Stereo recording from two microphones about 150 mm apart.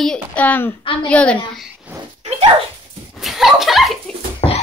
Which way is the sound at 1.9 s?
10° right (ahead or behind).